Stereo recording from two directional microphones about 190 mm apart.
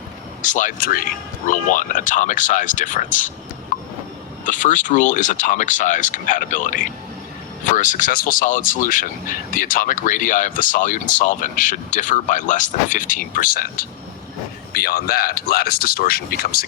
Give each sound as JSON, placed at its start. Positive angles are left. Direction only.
{"t": 0.4, "sound": "speech", "side_deg": 40}
{"t": 3.7, "sound": "train", "side_deg": 45}
{"t": 4.4, "sound": "speech", "side_deg": 40}